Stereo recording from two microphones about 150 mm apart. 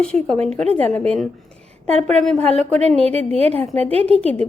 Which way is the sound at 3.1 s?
45° right (ahead or behind).